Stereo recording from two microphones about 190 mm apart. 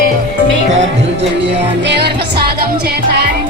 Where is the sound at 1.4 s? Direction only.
65° right (ahead or behind).